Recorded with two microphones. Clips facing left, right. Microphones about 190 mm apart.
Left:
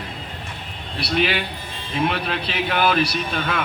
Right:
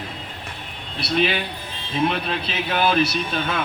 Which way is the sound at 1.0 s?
20° right (ahead or behind).